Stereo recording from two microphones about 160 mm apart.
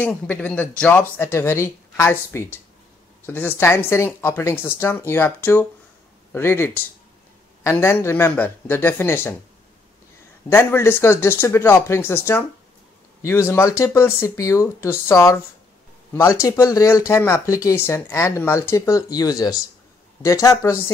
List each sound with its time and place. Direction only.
0.0 s speech: 10° left (ahead or behind)
10.5 s speech: 15° left (ahead or behind)